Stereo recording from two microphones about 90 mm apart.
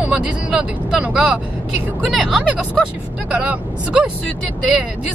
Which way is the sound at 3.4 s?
15° right (ahead or behind).